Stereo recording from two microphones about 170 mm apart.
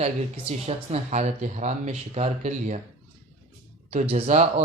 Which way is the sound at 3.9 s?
40° right (ahead or behind).